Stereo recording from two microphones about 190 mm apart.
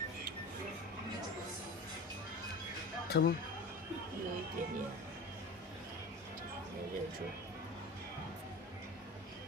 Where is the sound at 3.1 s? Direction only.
55° left (ahead or behind).